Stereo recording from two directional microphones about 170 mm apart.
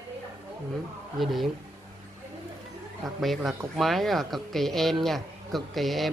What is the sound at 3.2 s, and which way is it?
Speech, centre (ahead or behind).